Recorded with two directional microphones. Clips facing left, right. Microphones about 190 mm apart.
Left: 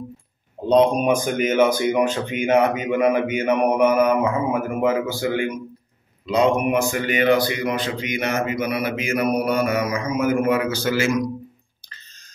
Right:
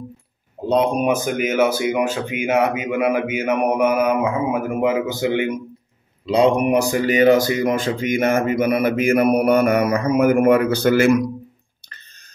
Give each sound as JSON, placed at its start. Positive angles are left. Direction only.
{"t": 0.7, "sound": "speech", "side_deg": -5}